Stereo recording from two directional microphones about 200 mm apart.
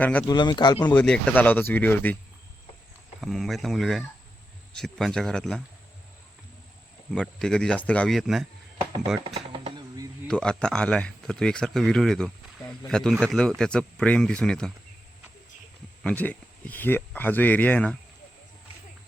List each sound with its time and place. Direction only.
0.0 s speech: 5° left (ahead or behind)
0.3 s a man's voice: 20° left (ahead or behind)
0.9 s speech: 5° left (ahead or behind)
3.2 s speech: centre (ahead or behind)
7.1 s speech: 5° left (ahead or behind)
9.5 s a sound: 25° right (ahead or behind)
10.2 s speech: 5° left (ahead or behind)
16.0 s speech: 5° left (ahead or behind)